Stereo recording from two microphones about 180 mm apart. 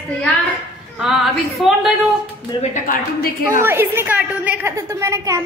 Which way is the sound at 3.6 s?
10° right (ahead or behind).